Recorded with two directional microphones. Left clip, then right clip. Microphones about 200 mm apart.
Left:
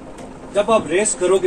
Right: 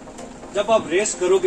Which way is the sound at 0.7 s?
45° left (ahead or behind).